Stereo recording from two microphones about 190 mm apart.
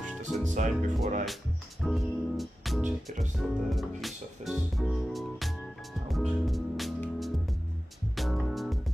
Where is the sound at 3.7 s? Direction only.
Centre (ahead or behind).